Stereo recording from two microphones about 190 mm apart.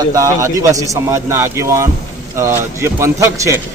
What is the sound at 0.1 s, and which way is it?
A man's voice, 15° right (ahead or behind).